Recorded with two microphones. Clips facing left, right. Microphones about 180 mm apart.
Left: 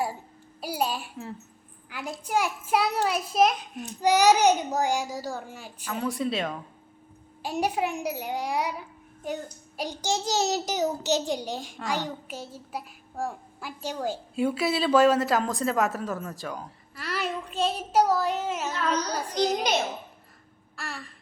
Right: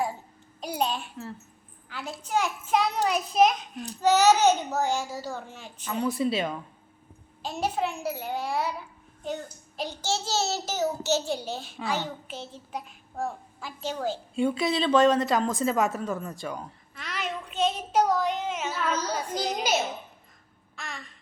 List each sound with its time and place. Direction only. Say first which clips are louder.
0.6 s a child's voice: even; 5° left (ahead or behind)
4.0 s a child's voice: even; 10° left (ahead or behind)
7.4 s a child's voice: left 2 dB; 15° left (ahead or behind)
18.7 s a woman's voice: left 1 dB; 5° right (ahead or behind)
20.7 s a sound: left 2 dB; 5° left (ahead or behind)